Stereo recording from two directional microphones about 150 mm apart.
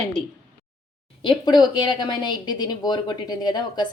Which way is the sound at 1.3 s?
30° left (ahead or behind).